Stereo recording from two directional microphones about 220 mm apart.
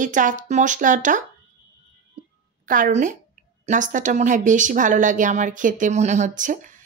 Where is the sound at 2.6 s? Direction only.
35° right (ahead or behind).